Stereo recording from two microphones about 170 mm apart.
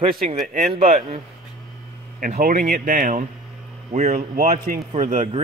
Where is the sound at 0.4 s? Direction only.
45° right (ahead or behind).